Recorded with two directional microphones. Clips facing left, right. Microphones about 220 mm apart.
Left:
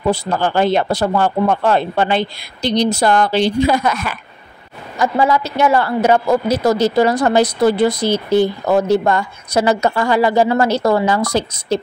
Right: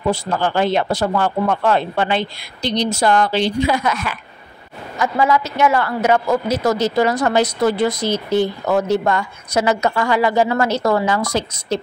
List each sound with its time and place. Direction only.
0.1 s a man's voice: 35° left (ahead or behind)